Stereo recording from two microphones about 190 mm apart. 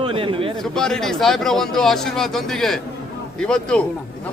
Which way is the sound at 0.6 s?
5° left (ahead or behind).